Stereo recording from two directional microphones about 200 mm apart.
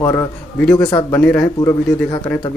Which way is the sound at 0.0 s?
20° left (ahead or behind).